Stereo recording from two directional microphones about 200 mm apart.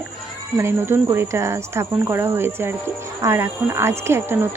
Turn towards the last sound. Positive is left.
turn(degrees=-10)  # may be behind; listen again after turning